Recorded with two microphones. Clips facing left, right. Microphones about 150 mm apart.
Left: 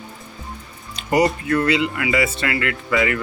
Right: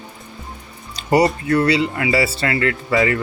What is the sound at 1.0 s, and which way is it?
Music, 30° right (ahead or behind).